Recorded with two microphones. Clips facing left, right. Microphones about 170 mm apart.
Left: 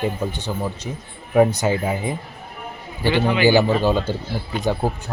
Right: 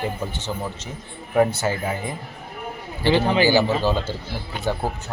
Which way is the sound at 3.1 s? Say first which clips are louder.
Left 1 dB; 35° right (ahead or behind).